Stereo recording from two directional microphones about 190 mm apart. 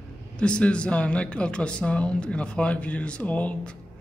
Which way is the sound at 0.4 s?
5° left (ahead or behind).